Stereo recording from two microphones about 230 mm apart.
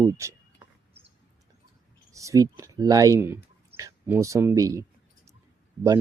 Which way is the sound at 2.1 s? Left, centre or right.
Centre.